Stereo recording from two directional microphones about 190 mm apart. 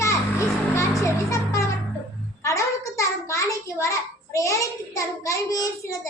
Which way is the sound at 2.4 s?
15° left (ahead or behind).